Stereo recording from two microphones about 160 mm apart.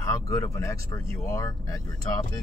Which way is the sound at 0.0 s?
20° left (ahead or behind).